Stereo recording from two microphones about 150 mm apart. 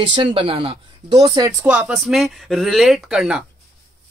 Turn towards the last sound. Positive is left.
turn(degrees=-5)  # may be behind; listen again after turning